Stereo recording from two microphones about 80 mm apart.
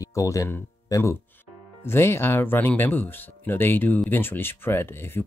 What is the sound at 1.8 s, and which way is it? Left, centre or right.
Speech, left.